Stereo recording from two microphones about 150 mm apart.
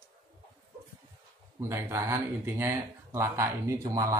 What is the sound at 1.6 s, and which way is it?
Speech, 20° right (ahead or behind).